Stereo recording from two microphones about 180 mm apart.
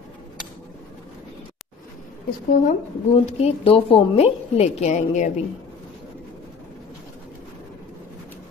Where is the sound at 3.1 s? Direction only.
35° left (ahead or behind).